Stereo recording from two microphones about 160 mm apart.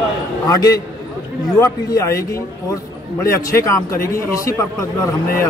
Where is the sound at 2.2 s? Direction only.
20° left (ahead or behind).